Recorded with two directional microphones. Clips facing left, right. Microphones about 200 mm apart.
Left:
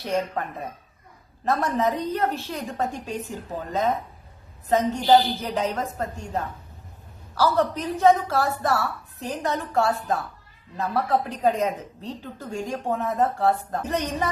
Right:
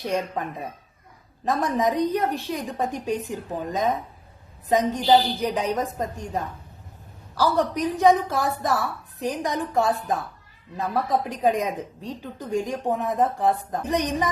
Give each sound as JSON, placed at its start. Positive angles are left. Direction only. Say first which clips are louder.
{"t": 0.0, "sound": "a woman's voice", "louder": "even", "side_deg": -15}
{"t": 1.5, "sound": "a woman's voice", "louder": "even", "side_deg": -15}